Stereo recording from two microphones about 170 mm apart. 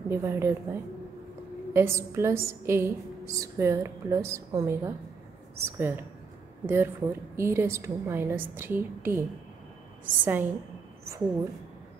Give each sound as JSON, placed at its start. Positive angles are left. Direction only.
{"t": 0.1, "sound": "a woman's voice", "side_deg": -15}
{"t": 10.2, "sound": "a woman's voice", "side_deg": -10}